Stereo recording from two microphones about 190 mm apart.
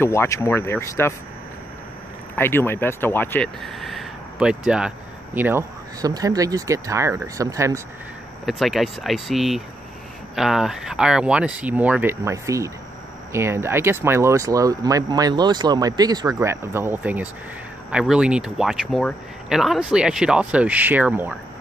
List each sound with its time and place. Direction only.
0.0 s speech: 15° left (ahead or behind)
2.3 s speech: 10° left (ahead or behind); by 7.8 s 15° right (ahead or behind)
8.5 s speech: centre (ahead or behind)